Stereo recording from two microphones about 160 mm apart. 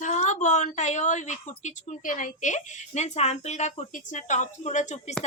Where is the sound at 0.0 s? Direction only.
50° left (ahead or behind).